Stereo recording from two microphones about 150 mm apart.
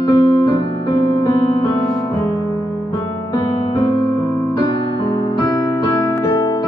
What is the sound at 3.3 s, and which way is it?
Music, 25° left (ahead or behind).